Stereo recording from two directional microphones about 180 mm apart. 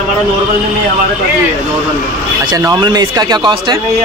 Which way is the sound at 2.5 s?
20° right (ahead or behind).